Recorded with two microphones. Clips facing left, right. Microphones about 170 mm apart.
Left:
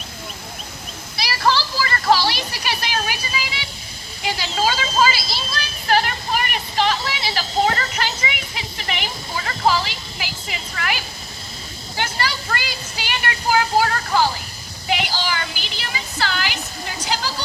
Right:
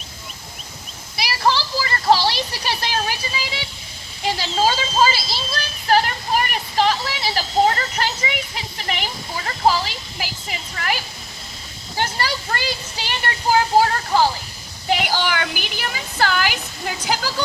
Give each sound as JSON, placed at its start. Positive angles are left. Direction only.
{"t": 1.1, "sound": "music", "side_deg": -20}
{"t": 10.8, "sound": "a sound", "side_deg": -35}
{"t": 14.8, "sound": "a woman's voice", "side_deg": -50}